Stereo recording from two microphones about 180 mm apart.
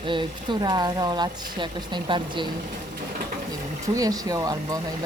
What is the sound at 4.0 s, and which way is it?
Speech, 20° right (ahead or behind).